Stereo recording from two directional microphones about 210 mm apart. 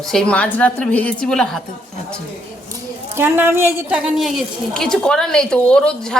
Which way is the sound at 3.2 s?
10° right (ahead or behind).